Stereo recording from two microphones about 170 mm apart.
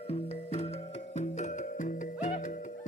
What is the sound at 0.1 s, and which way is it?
Music, 35° left (ahead or behind).